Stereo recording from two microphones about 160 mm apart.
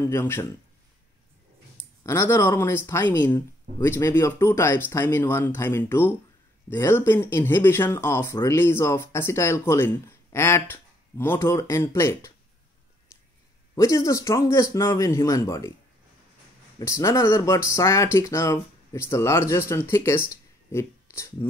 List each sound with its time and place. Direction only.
0.0 s speech: 15° left (ahead or behind)
2.0 s speech: 15° left (ahead or behind)
13.7 s speech: 20° left (ahead or behind)
16.8 s speech: 20° left (ahead or behind)